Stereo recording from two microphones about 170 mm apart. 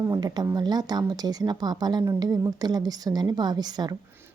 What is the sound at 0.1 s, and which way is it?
A woman's voice, 25° right (ahead or behind).